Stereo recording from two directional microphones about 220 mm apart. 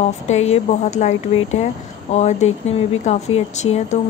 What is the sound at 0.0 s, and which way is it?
A woman's voice, 30° left (ahead or behind).